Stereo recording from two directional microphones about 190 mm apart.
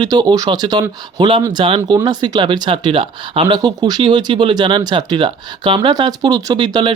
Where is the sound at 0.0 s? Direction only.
20° right (ahead or behind).